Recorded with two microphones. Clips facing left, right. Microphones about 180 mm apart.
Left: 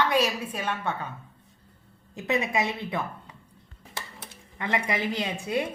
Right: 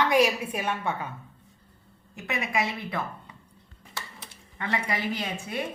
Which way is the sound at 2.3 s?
25° left (ahead or behind).